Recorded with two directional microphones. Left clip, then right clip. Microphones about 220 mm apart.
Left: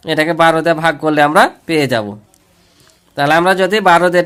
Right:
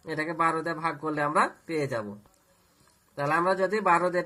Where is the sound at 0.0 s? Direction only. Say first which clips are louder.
Left 16 dB; 45° left (ahead or behind).